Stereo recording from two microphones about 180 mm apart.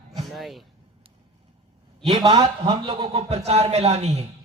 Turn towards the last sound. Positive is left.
turn(degrees=-35)  # may be behind; listen again after turning